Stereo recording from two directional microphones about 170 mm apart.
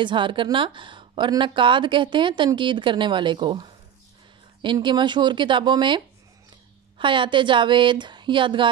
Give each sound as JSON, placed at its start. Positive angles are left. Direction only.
{"t": 0.0, "sound": "a woman's voice", "side_deg": -30}